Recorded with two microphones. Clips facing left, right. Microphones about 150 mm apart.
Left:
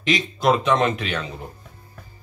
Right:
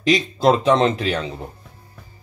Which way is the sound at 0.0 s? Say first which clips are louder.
Right 4 dB; 30° right (ahead or behind).